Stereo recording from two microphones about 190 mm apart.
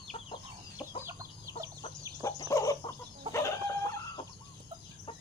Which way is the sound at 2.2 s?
15° left (ahead or behind).